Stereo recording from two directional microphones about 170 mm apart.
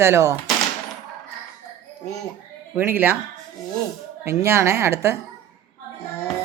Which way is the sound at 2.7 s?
10° right (ahead or behind).